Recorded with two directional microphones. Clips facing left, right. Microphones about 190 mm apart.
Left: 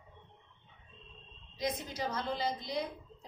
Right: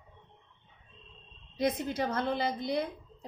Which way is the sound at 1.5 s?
60° right (ahead or behind).